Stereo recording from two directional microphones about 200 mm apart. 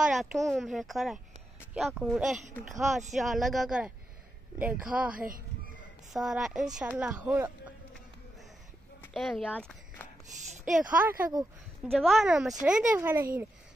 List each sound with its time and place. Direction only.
0.0 s speech: centre (ahead or behind)
5.1 s speech: 45° right (ahead or behind)
6.1 s speech: centre (ahead or behind)
9.1 s speech: centre (ahead or behind)
10.6 s speech: 5° right (ahead or behind)
11.8 s speech: centre (ahead or behind)